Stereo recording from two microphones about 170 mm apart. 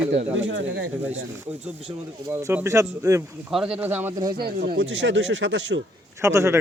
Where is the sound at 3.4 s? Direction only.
5° right (ahead or behind).